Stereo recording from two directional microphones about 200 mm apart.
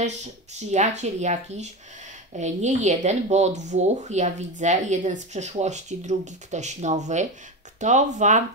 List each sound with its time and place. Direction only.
0.6 s speech: 35° right (ahead or behind)